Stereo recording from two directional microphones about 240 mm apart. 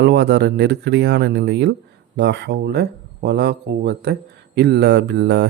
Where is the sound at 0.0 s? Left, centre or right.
Right.